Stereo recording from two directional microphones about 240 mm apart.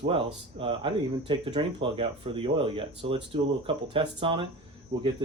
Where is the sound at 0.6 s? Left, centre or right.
Right.